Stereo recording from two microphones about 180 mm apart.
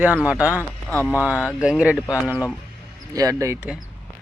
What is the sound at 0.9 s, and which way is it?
Speech, 5° left (ahead or behind).